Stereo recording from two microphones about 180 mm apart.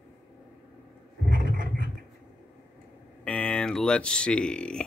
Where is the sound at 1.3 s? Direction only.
50° right (ahead or behind).